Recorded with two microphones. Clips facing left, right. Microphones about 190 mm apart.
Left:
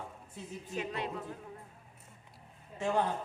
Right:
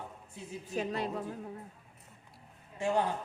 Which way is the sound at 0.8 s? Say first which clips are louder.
Right 3 dB; 40° right (ahead or behind).